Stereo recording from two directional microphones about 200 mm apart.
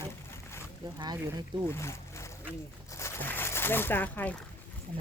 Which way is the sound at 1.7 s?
15° left (ahead or behind).